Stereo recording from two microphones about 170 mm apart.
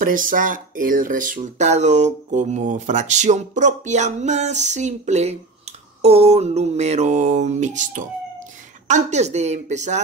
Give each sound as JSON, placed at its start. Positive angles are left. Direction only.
{"t": 0.0, "sound": "speech", "side_deg": -55}